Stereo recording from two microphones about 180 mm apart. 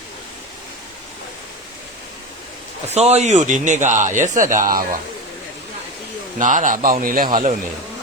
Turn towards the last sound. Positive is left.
turn(degrees=-50)  # may be behind; listen again after turning